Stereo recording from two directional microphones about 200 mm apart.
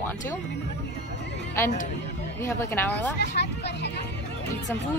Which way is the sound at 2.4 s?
10° left (ahead or behind).